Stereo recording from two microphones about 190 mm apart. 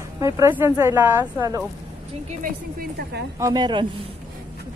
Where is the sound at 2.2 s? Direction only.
50° right (ahead or behind).